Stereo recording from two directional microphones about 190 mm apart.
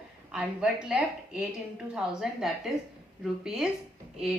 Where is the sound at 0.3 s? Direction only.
5° right (ahead or behind).